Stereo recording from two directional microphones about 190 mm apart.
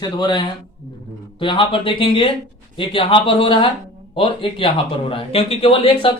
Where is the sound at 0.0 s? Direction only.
25° left (ahead or behind).